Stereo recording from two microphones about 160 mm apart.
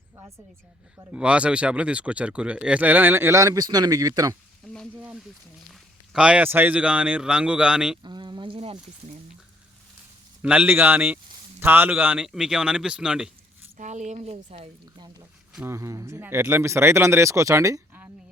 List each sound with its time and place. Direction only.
1.1 s speech: 5° right (ahead or behind); by 4.4 s 20° right (ahead or behind)
4.9 s speech: 10° right (ahead or behind)
8.0 s a sound: 30° right (ahead or behind)
10.4 s a man's voice: 10° right (ahead or behind)
13.7 s speech: 50° right (ahead or behind)
15.6 s speech: 15° right (ahead or behind)